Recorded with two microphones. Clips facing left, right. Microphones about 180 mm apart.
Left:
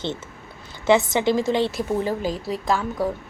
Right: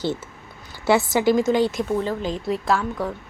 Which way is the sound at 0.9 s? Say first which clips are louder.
Even; 25° left (ahead or behind).